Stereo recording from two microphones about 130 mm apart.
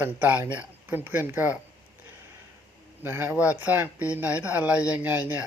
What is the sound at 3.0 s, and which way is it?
Speech, 15° right (ahead or behind).